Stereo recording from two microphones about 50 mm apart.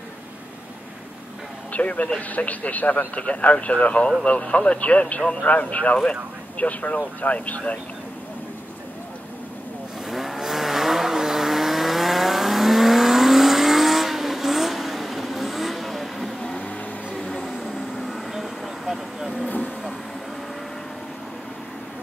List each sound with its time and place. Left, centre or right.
1.7 s speech: left
10.0 s vehicle: centre
16.4 s vehicle: centre
17.2 s a sound: centre
17.5 s vehicle: centre
19.4 s vehicle: left